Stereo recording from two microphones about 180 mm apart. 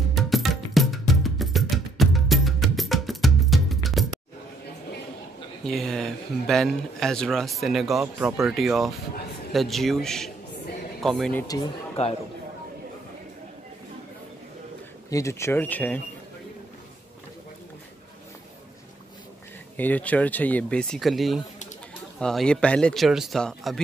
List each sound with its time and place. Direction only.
0.1 s music: centre (ahead or behind)
5.7 s a man's voice: centre (ahead or behind)
11.4 s speech: 20° left (ahead or behind)
15.0 s speech: 15° left (ahead or behind)
19.8 s a man's voice: 10° left (ahead or behind)